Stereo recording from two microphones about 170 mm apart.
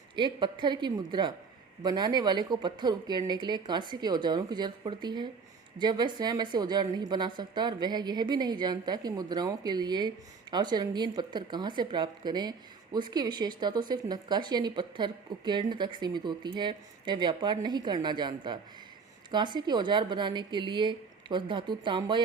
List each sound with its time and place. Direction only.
0.2 s a woman's voice: 25° right (ahead or behind)